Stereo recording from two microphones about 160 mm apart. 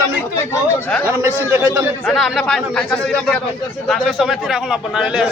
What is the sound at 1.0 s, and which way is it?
Speech, 15° right (ahead or behind).